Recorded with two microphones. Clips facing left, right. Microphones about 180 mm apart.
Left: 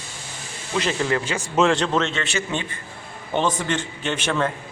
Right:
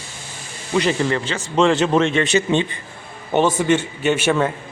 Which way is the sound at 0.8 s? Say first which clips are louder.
Right 4 dB; centre (ahead or behind).